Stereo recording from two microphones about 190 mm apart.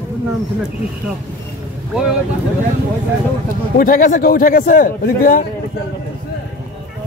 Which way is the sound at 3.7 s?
45° left (ahead or behind).